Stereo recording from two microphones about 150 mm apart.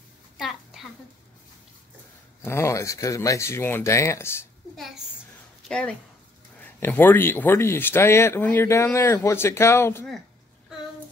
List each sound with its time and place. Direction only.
0.4 s a sound: centre (ahead or behind)
2.4 s speech: 20° left (ahead or behind)
5.7 s speech: 5° left (ahead or behind)